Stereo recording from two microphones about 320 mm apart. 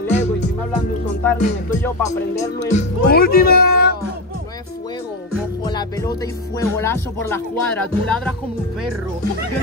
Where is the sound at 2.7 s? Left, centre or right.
Left.